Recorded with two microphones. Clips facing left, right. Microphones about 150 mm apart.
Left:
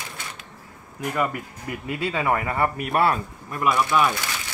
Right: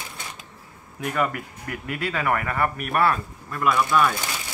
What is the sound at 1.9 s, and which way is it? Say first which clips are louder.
Speech: left 1 dB; 20° left (ahead or behind).